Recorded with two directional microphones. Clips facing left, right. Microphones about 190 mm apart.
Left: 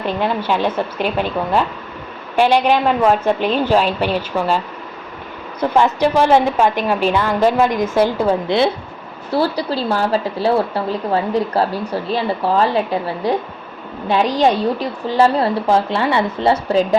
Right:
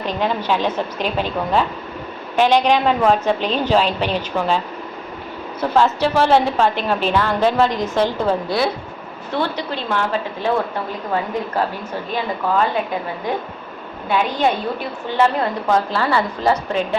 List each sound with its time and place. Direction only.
0.2 s a woman's voice: 10° left (ahead or behind)
8.4 s speech: 25° left (ahead or behind)
9.3 s a woman's voice: 35° left (ahead or behind)